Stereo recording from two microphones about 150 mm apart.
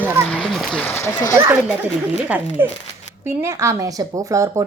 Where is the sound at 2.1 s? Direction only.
10° right (ahead or behind).